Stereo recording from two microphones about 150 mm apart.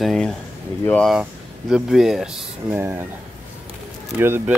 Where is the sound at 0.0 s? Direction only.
Centre (ahead or behind).